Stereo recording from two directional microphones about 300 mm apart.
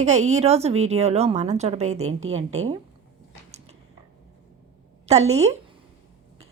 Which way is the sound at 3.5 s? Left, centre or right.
Right.